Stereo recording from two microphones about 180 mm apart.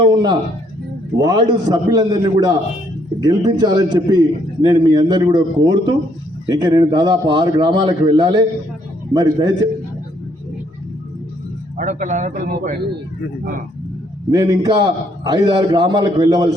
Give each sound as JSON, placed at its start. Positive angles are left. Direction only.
{"t": 0.0, "sound": "a man's voice", "side_deg": -25}
{"t": 11.8, "sound": "a man's voice", "side_deg": -45}
{"t": 14.3, "sound": "a man's voice", "side_deg": -20}